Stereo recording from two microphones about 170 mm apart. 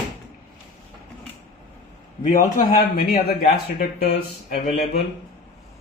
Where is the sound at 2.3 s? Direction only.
55° left (ahead or behind).